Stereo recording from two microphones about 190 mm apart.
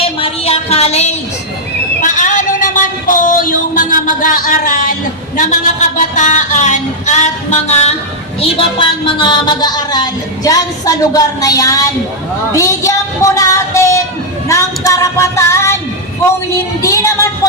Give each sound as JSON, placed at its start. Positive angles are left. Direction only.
{"t": 0.0, "sound": "a sound", "side_deg": 30}
{"t": 6.0, "sound": "music", "side_deg": 40}
{"t": 8.4, "sound": "a woman's voice", "side_deg": 25}
{"t": 16.8, "sound": "a woman's voice", "side_deg": 15}